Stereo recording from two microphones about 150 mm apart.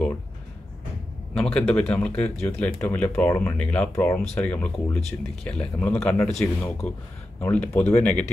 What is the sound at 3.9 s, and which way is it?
Speech, 20° left (ahead or behind).